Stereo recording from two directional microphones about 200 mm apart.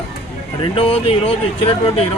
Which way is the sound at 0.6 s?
25° left (ahead or behind).